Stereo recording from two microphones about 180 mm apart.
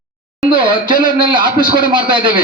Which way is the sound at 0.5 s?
25° right (ahead or behind).